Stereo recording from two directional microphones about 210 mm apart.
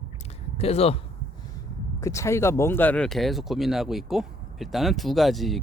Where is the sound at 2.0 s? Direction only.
15° left (ahead or behind).